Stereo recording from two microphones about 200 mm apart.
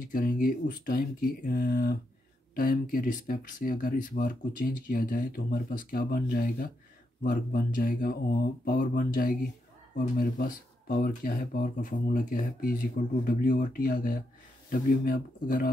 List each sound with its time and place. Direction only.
0.0 s speech: 45° left (ahead or behind)